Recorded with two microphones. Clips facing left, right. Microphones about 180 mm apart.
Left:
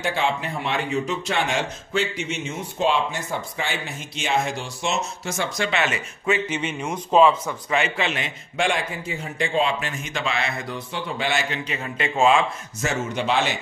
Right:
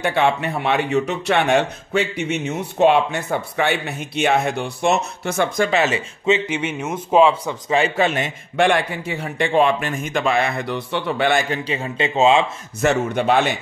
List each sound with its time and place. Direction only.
0.0 s speech: 65° right (ahead or behind)
5.7 s speech: 35° right (ahead or behind); by 7.5 s 15° right (ahead or behind)
7.7 s speech: 35° right (ahead or behind); by 11.6 s 55° right (ahead or behind)
11.6 s speech: 25° right (ahead or behind)
12.8 s speech: 60° right (ahead or behind)